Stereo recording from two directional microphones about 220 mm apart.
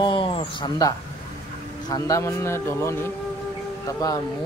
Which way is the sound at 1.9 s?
15° left (ahead or behind).